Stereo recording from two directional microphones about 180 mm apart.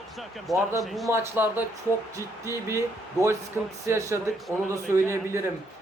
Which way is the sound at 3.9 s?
15° right (ahead or behind).